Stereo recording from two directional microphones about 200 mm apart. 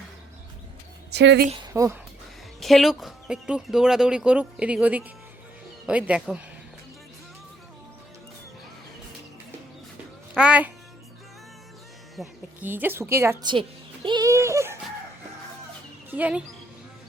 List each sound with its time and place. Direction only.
1.1 s a woman's voice: 60° right (ahead or behind)
1.5 s speech: 20° right (ahead or behind)
2.6 s speech: centre (ahead or behind)
10.3 s a child's voice: 5° right (ahead or behind)
12.1 s speech: 5° right (ahead or behind)
13.4 s music: 25° right (ahead or behind)
16.0 s speech: 10° right (ahead or behind)